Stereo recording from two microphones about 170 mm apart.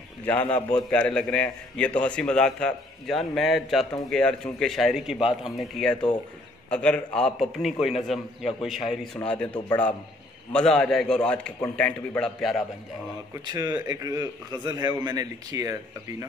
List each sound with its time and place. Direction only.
0.2 s a man's voice: 10° left (ahead or behind)
13.5 s a man's voice: 25° right (ahead or behind)